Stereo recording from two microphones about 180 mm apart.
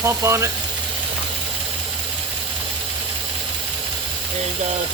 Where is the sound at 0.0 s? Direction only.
15° right (ahead or behind).